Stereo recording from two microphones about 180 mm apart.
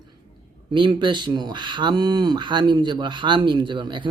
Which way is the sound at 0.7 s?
25° right (ahead or behind).